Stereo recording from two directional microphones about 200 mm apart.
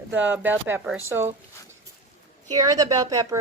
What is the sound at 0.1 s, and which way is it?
Speech, 10° right (ahead or behind).